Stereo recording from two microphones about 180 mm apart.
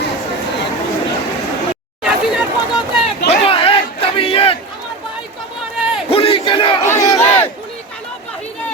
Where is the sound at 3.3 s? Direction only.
30° left (ahead or behind).